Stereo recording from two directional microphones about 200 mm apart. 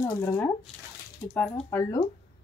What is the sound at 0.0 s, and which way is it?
Speech, 15° left (ahead or behind).